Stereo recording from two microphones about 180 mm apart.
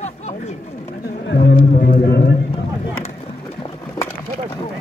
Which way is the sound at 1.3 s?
65° left (ahead or behind).